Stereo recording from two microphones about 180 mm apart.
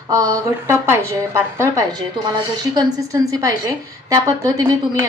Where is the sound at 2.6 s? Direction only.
20° right (ahead or behind).